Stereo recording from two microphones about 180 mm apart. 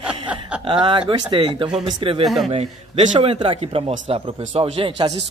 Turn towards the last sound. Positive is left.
turn(degrees=-30)  # may be behind; listen again after turning